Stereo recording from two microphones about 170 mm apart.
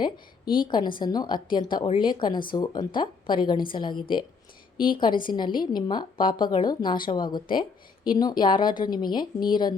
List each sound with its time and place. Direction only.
0.0 s a woman's voice: 25° left (ahead or behind)